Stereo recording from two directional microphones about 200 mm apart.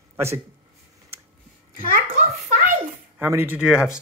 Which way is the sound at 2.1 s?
35° right (ahead or behind).